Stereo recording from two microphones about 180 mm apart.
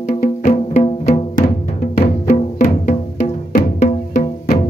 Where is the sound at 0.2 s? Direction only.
40° left (ahead or behind).